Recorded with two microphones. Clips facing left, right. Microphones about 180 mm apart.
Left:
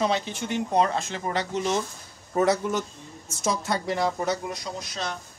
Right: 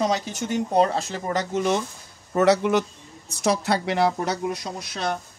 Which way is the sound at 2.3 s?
75° right (ahead or behind).